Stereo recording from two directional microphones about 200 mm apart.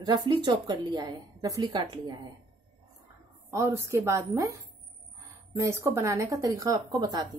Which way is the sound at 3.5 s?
15° right (ahead or behind).